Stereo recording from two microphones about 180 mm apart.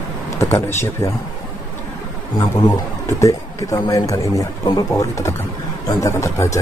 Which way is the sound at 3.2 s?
20° left (ahead or behind).